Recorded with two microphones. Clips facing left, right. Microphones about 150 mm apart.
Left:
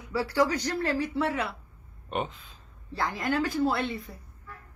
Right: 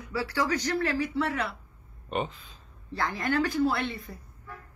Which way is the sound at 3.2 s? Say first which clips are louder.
Right 1 dB; 20° left (ahead or behind).